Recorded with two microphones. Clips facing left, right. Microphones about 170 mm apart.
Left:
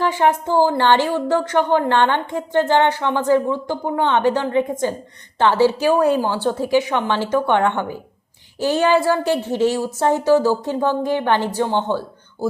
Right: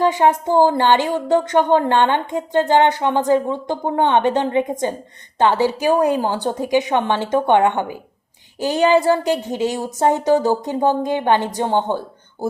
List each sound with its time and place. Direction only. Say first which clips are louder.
0.0 s a woman's voice: right 2 dB; 20° right (ahead or behind)